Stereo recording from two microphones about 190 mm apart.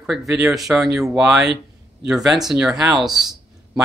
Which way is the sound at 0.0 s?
Centre (ahead or behind).